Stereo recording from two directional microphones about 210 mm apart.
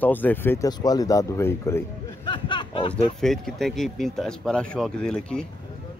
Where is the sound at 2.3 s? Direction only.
25° left (ahead or behind).